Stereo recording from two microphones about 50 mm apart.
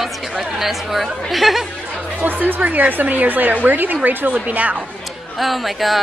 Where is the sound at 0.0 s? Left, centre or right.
Centre.